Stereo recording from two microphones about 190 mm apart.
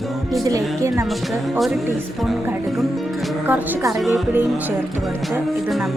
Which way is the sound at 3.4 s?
10° right (ahead or behind).